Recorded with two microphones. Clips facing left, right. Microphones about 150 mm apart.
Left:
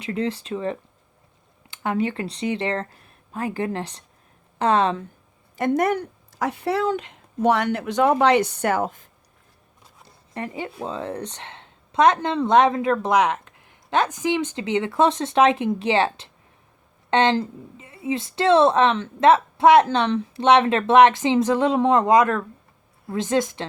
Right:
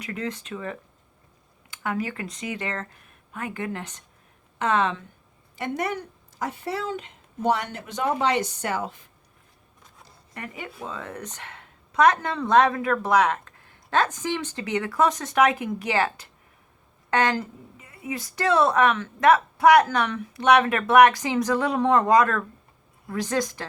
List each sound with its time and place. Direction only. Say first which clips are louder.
0.0 s a woman's voice: left 6 dB; 30° left (ahead or behind)
5.5 s a woman's voice: left 8 dB; 45° left (ahead or behind)
6.4 s speech: left 7 dB; 70° left (ahead or behind); by 9.0 s 50° left (ahead or behind)
10.3 s a woman's voice: left 7 dB; 30° left (ahead or behind)